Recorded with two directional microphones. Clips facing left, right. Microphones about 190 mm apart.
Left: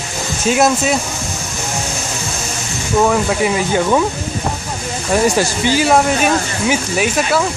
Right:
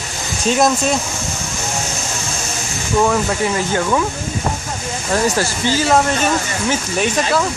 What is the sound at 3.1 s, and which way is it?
Speech, 15° left (ahead or behind).